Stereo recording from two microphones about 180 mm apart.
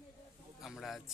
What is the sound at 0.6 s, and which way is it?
Speech, centre (ahead or behind).